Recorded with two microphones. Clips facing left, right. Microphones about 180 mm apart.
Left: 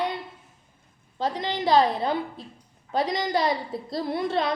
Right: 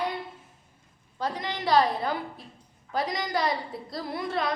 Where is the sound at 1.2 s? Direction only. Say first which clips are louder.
Left 4 dB; 25° left (ahead or behind).